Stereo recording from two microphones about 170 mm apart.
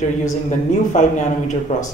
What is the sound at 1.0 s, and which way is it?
Speech, 45° left (ahead or behind).